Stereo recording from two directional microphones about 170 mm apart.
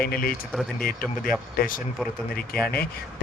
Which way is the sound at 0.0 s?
60° left (ahead or behind).